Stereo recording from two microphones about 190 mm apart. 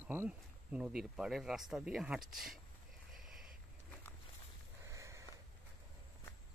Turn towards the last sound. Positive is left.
turn(degrees=-15)  # may be behind; listen again after turning